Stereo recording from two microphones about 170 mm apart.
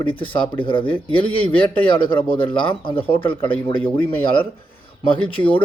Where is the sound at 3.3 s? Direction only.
10° left (ahead or behind).